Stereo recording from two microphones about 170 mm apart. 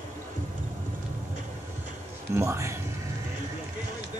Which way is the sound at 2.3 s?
15° right (ahead or behind).